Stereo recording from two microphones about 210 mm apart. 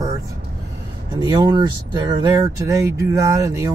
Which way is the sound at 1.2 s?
20° right (ahead or behind).